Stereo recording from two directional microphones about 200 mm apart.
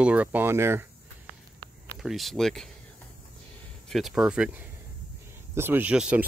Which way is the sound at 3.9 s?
Centre (ahead or behind).